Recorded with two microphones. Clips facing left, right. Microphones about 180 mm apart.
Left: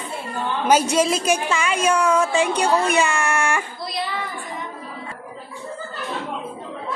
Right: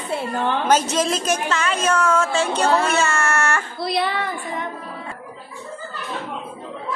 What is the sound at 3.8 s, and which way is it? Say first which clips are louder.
Speech: right 5 dB; 65° right (ahead or behind).